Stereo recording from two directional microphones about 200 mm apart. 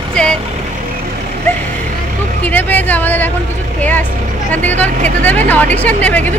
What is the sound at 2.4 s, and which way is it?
Speech, 10° left (ahead or behind).